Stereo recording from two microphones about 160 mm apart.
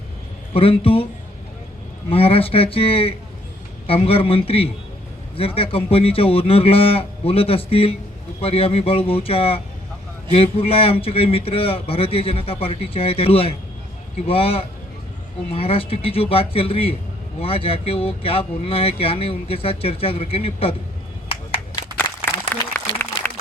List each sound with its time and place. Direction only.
0.5 s speech: 35° left (ahead or behind)
2.0 s speech: 35° left (ahead or behind)
22.8 s applause: 15° left (ahead or behind)